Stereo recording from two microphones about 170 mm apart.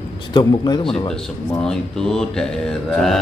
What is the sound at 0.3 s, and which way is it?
Speech, 25° left (ahead or behind).